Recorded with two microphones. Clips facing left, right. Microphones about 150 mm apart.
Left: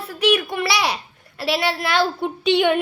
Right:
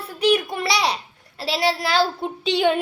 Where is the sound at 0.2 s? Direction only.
65° left (ahead or behind).